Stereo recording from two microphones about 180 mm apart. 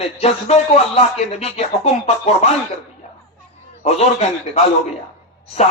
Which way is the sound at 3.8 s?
35° left (ahead or behind).